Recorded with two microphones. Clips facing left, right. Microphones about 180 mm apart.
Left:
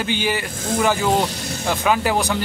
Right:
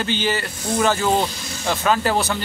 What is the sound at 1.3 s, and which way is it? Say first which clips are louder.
Speech: left 5 dB; 60° left (ahead or behind).